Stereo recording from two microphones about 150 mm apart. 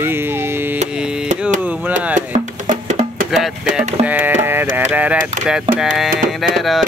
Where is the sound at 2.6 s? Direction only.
55° right (ahead or behind).